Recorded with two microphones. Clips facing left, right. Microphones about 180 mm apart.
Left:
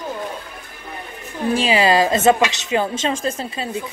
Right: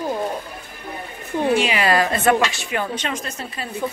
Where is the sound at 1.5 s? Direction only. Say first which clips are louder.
Left 3 dB; 30° left (ahead or behind).